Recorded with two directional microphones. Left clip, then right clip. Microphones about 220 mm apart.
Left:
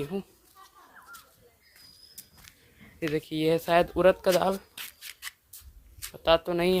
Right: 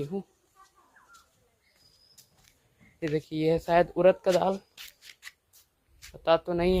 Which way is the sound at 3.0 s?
5° left (ahead or behind).